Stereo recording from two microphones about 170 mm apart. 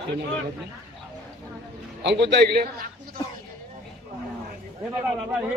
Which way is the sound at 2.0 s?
90° right.